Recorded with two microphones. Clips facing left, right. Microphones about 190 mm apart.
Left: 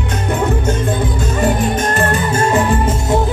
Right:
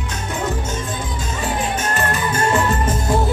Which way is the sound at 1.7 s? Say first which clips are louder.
Left 5 dB; 35° left (ahead or behind).